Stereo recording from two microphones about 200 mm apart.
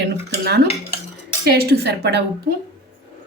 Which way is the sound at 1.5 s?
55° right (ahead or behind).